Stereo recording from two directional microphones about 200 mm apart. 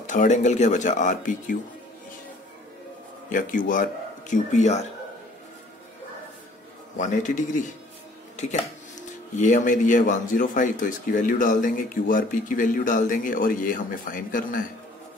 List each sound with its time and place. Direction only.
0.0 s speech: 40° left (ahead or behind)
3.3 s speech: 45° left (ahead or behind)
7.0 s speech: 40° left (ahead or behind)
9.4 s speech: 40° left (ahead or behind)